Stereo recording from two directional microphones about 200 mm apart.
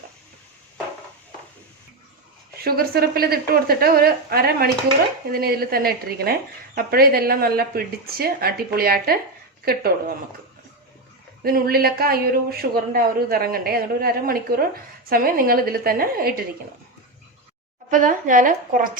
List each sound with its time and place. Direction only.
2.6 s speech: 50° right (ahead or behind)
11.4 s speech: 50° right (ahead or behind)
17.9 s speech: 40° right (ahead or behind)